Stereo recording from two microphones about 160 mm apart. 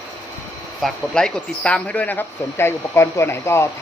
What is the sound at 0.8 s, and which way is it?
Speech, 5° left (ahead or behind).